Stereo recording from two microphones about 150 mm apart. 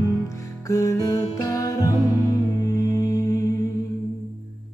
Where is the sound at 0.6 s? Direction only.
20° left (ahead or behind).